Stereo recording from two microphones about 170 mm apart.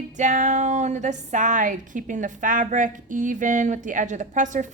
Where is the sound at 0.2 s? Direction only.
45° right (ahead or behind).